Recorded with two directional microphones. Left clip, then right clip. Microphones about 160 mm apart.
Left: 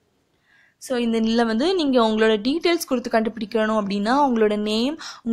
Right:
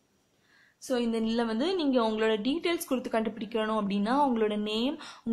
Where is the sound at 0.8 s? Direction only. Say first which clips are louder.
Left 7 dB; 30° left (ahead or behind).